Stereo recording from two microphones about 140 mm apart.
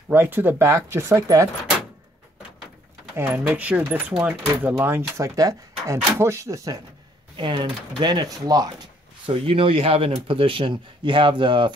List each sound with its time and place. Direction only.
0.1 s speech: 15° right (ahead or behind)
3.2 s speech: 10° right (ahead or behind)
4.8 s speech: 20° right (ahead or behind)
7.3 s speech: 35° right (ahead or behind)
9.2 s speech: 40° right (ahead or behind)